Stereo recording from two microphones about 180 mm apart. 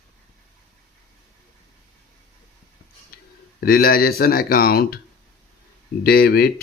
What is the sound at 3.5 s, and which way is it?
Speech, 55° left (ahead or behind).